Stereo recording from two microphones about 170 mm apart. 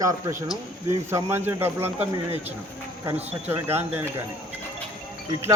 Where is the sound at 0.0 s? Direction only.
20° right (ahead or behind).